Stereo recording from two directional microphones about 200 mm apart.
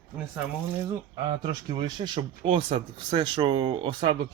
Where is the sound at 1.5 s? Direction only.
20° right (ahead or behind).